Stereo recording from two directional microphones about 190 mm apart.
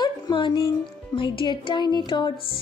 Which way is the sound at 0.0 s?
25° left (ahead or behind).